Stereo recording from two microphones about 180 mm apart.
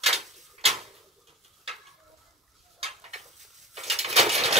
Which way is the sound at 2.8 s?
35° right (ahead or behind).